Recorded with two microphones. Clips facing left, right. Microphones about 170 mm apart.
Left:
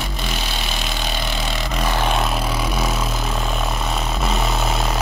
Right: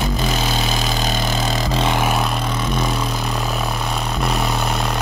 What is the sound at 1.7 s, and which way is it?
Vehicle, 25° right (ahead or behind).